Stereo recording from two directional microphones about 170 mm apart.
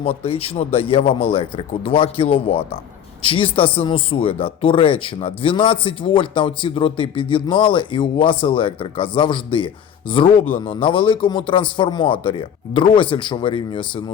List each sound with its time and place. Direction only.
0.2 s a man's voice: 35° left (ahead or behind)